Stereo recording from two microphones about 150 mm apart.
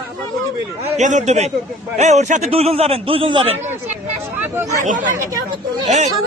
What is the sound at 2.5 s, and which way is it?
Speech, 40° right (ahead or behind).